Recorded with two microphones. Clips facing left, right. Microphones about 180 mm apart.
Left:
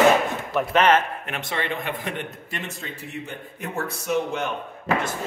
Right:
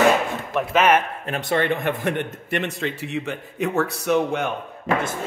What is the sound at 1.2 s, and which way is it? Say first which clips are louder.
Speech: right 8 dB; 35° right (ahead or behind).